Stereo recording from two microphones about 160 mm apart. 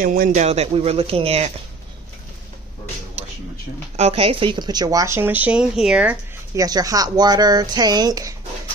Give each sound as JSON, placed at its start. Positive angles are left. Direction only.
{"t": 0.0, "sound": "speech", "side_deg": -60}
{"t": 3.9, "sound": "speech", "side_deg": -40}
{"t": 6.5, "sound": "speech", "side_deg": -20}